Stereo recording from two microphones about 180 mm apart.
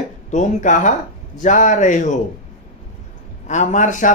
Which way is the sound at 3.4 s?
40° left (ahead or behind).